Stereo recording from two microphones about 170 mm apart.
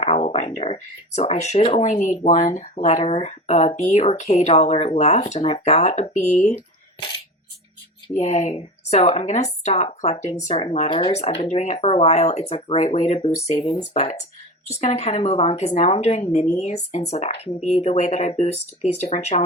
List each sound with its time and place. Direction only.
0.0 s speech: 35° left (ahead or behind)
1.9 s a woman's voice: 45° left (ahead or behind)
8.1 s speech: 40° left (ahead or behind)
11.2 s a woman's voice: 40° left (ahead or behind)